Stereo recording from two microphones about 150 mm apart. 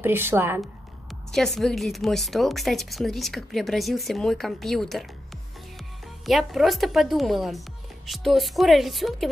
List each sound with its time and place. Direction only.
0.0 s a woman's voice: 15° right (ahead or behind)
1.3 s a woman's voice: 5° left (ahead or behind)
6.2 s a woman's voice: centre (ahead or behind)